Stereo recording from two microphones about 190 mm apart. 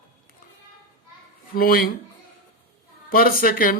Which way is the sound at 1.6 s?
50° left (ahead or behind).